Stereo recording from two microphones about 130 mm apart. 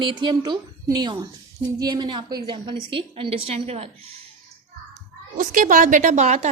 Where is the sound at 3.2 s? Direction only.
50° right (ahead or behind).